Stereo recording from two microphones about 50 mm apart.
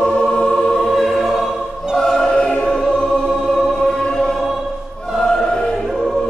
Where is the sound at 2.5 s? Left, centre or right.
Centre.